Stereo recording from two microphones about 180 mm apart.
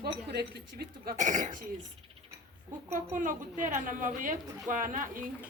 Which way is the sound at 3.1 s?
45° right (ahead or behind).